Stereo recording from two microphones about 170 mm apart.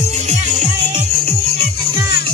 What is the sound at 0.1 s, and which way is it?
Music, 45° right (ahead or behind).